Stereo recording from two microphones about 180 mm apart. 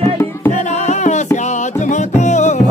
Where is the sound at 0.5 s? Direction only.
40° left (ahead or behind).